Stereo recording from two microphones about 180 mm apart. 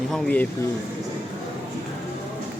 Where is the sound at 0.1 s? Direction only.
10° left (ahead or behind).